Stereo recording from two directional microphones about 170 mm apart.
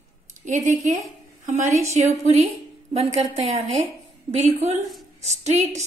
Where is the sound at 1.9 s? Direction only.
40° right (ahead or behind).